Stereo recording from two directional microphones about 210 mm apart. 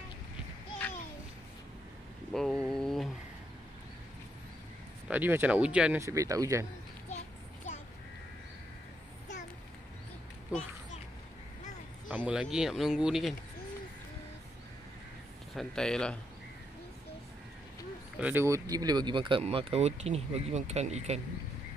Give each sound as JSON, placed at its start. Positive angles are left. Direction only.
{"t": 2.3, "sound": "a sound", "side_deg": 0}
{"t": 5.0, "sound": "speech", "side_deg": -10}
{"t": 7.1, "sound": "children playing", "side_deg": 35}
{"t": 12.2, "sound": "speech", "side_deg": -5}
{"t": 15.5, "sound": "speech", "side_deg": 5}
{"t": 18.1, "sound": "speech", "side_deg": -10}